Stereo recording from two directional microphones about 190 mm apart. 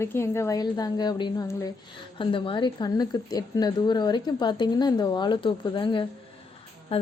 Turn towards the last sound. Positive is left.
turn(degrees=30)  # may be behind; listen again after turning